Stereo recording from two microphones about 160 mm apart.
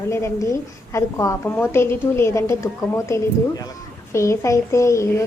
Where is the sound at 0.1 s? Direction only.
20° left (ahead or behind).